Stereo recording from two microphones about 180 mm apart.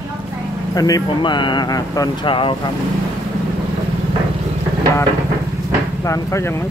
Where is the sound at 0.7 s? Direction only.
20° left (ahead or behind).